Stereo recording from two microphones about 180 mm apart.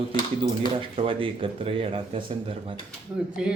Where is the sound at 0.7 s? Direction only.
30° right (ahead or behind).